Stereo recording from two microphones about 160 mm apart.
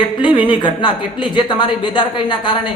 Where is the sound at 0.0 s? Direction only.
30° left (ahead or behind).